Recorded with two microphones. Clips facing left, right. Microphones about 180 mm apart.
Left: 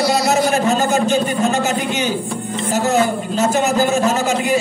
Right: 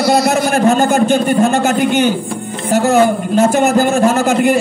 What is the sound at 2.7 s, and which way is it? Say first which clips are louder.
A man's voice: right 6 dB; 55° right (ahead or behind).